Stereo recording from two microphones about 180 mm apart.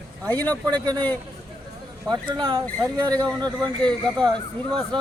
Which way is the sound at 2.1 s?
25° right (ahead or behind).